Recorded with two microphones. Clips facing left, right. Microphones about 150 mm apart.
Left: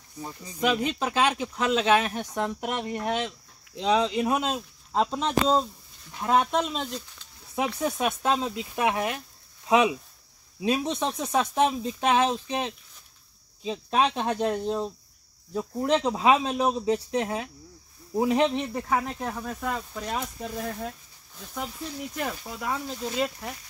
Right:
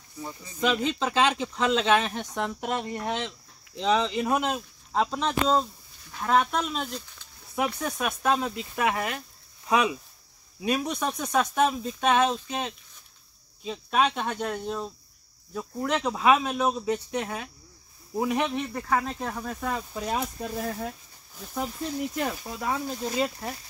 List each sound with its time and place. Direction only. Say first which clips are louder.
0.2 s speech: even; 15° left (ahead or behind)
5.0 s speech: left 2 dB; 5° left (ahead or behind)
6.4 s speech: left 2 dB; 25° left (ahead or behind)
13.7 s speech: left 1 dB; 30° left (ahead or behind)
18.7 s speech: even; 10° left (ahead or behind)
19.1 s speech: even; centre (ahead or behind)
22.1 s speech: right 2 dB; 5° right (ahead or behind)